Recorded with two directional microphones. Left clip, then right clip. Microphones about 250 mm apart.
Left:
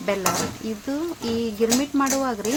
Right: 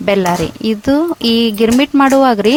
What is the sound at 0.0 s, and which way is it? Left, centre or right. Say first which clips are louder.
Speech: right 10 dB; right.